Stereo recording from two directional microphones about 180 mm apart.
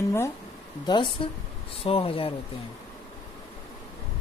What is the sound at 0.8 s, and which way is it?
Speech, 25° left (ahead or behind).